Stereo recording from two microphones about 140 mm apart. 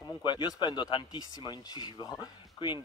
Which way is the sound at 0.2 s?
30° left (ahead or behind).